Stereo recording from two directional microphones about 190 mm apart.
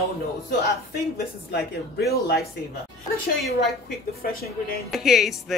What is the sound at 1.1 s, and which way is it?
Speech, 55° left (ahead or behind).